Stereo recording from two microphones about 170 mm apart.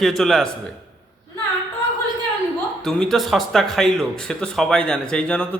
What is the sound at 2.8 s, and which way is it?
Speech, centre (ahead or behind).